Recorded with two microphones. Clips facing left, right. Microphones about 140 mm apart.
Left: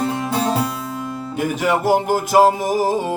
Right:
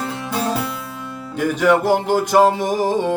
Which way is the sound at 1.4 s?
10° left (ahead or behind).